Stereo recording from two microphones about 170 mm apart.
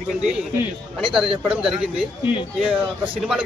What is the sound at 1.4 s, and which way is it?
Speech, 5° right (ahead or behind).